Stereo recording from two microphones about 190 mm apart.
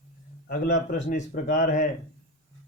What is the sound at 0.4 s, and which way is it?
Speech, 55° left (ahead or behind).